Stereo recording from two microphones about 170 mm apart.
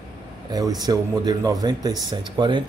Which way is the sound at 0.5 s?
20° right (ahead or behind).